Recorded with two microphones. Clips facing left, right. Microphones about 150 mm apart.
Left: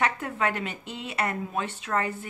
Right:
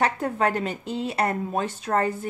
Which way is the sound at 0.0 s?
35° right (ahead or behind).